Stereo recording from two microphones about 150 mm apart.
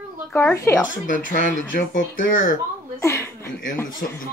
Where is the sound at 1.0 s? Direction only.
60° left (ahead or behind).